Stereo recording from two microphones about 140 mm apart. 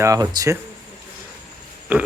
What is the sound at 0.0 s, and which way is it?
Speech, 25° right (ahead or behind).